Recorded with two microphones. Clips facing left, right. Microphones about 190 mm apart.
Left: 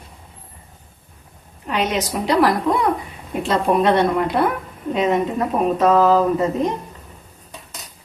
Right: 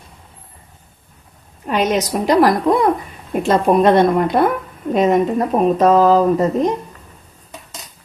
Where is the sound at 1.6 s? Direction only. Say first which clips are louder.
Right 4 dB; 45° right (ahead or behind).